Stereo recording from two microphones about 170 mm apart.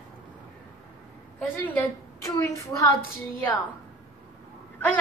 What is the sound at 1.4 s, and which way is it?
A woman's voice, 10° left (ahead or behind).